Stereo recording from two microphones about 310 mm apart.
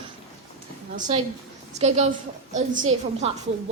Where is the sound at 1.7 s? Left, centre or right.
Right.